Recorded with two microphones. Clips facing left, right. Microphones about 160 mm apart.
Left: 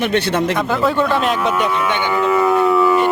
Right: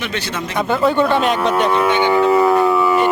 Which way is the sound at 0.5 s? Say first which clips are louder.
Right 1 dB; centre (ahead or behind).